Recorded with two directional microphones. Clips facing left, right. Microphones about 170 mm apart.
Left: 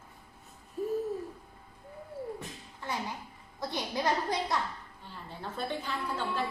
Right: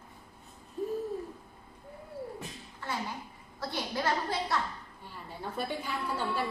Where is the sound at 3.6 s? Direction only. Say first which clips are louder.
Left 1 dB; 20° left (ahead or behind).